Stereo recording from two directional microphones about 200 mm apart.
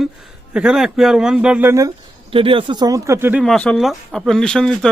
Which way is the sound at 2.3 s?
25° right (ahead or behind).